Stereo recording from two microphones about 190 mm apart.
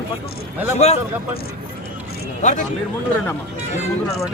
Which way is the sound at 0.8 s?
35° left (ahead or behind).